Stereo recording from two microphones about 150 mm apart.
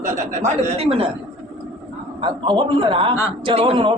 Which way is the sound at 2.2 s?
35° right (ahead or behind).